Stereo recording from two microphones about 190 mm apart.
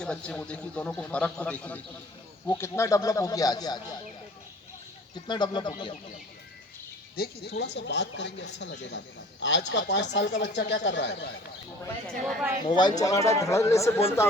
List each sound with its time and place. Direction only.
0.0 s a man's voice: 5° left (ahead or behind)
5.3 s speech: 25° left (ahead or behind)
7.2 s speech: 60° left (ahead or behind)
12.0 s speech: centre (ahead or behind)
12.6 s a man's voice: 25° left (ahead or behind)